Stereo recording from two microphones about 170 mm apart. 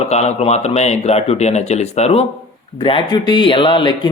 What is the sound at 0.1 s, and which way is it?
Speech, 40° left (ahead or behind).